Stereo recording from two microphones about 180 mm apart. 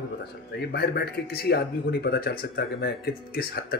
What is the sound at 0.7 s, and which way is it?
Speech, 60° left (ahead or behind).